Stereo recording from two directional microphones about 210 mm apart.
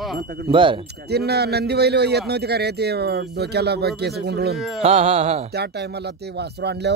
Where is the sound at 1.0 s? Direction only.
50° right (ahead or behind).